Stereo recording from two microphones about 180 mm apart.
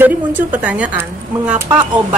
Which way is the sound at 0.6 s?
10° right (ahead or behind).